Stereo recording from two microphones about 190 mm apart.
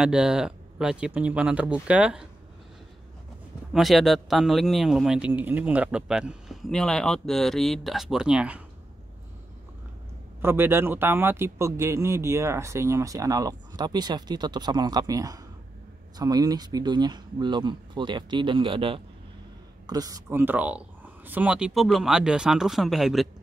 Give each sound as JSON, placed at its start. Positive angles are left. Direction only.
{"t": 0.0, "sound": "speech", "side_deg": -5}
{"t": 3.7, "sound": "speech", "side_deg": 0}
{"t": 10.4, "sound": "speech", "side_deg": -10}